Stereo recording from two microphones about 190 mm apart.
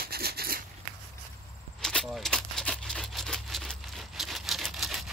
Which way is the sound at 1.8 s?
Centre (ahead or behind).